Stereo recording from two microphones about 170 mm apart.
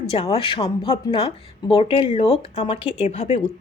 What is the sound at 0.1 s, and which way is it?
Speech, 35° left (ahead or behind).